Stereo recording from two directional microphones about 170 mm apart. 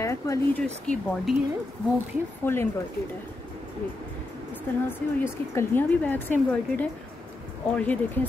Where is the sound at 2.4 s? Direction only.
10° left (ahead or behind).